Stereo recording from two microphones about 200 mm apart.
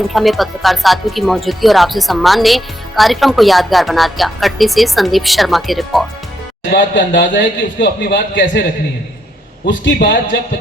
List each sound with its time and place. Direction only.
0.1 s speech: centre (ahead or behind)
6.7 s a man's voice: 60° left (ahead or behind)
9.6 s a man's voice: 60° left (ahead or behind)